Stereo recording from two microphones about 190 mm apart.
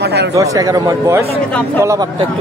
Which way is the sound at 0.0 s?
60° right (ahead or behind).